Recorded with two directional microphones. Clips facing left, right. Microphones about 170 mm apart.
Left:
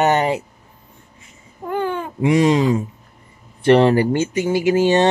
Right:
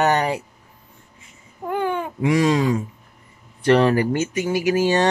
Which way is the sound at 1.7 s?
15° right (ahead or behind).